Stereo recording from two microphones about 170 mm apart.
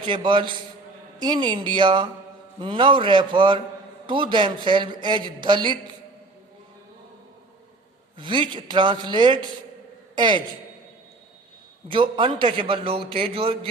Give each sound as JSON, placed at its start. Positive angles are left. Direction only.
{"t": 0.0, "sound": "speech", "side_deg": -30}
{"t": 8.2, "sound": "speech", "side_deg": -30}
{"t": 11.9, "sound": "a man's voice", "side_deg": -30}